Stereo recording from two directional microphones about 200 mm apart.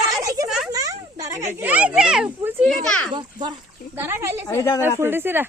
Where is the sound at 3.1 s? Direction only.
20° right (ahead or behind).